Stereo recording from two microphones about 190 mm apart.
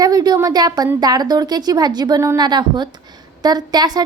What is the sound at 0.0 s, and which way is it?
A woman's voice, 20° right (ahead or behind).